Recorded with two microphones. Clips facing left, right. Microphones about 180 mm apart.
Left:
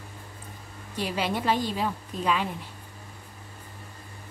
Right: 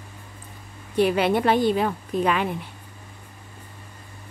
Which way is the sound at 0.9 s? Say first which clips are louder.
Right 9 dB; 60° right (ahead or behind).